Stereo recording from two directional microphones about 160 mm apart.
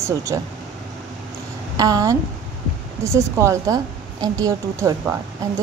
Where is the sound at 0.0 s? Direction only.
15° right (ahead or behind).